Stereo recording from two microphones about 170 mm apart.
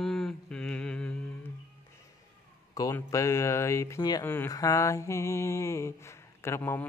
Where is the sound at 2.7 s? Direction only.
20° left (ahead or behind).